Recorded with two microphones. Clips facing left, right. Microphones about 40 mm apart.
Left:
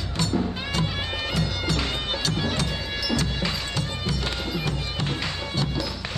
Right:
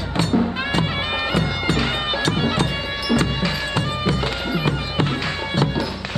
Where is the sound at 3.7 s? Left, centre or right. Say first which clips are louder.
Right 7 dB; right.